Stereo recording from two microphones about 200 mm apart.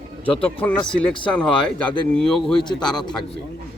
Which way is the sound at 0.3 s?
25° left (ahead or behind).